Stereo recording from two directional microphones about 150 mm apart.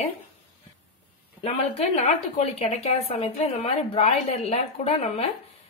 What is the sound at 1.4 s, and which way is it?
A woman's voice, 45° left (ahead or behind).